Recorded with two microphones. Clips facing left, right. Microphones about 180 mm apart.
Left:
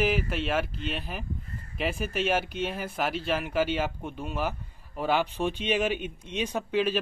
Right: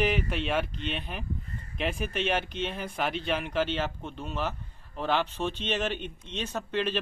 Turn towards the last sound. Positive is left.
turn(degrees=10)  # may be behind; listen again after turning